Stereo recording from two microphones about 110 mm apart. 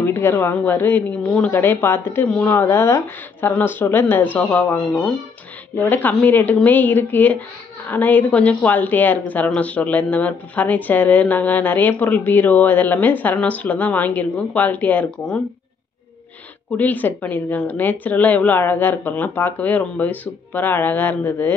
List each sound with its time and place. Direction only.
0.0 s a woman's voice: 20° left (ahead or behind)
16.7 s speech: 15° left (ahead or behind)